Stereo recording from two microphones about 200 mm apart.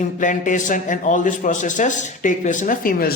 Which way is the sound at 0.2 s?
40° left (ahead or behind).